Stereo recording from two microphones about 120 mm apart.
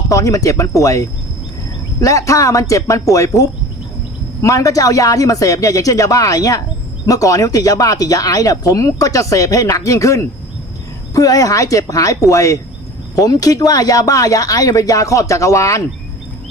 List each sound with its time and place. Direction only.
0.1 s speech: 30° left (ahead or behind)